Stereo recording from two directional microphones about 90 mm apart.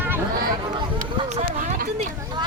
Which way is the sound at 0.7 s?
60° right (ahead or behind).